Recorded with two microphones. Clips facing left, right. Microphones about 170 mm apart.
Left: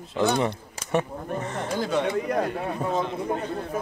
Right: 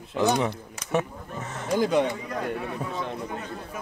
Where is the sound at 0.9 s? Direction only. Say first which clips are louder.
Left 1 dB; centre (ahead or behind).